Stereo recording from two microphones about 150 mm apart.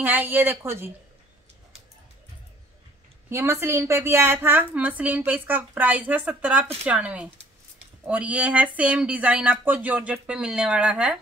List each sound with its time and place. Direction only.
0.0 s a woman's voice: 15° right (ahead or behind)
3.3 s a woman's voice: 20° right (ahead or behind)